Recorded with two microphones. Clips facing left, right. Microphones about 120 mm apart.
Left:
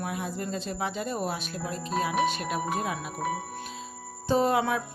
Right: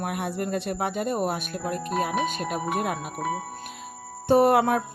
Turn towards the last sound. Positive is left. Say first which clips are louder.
# right 5 dB
turn(degrees=-55)  # may be behind; listen again after turning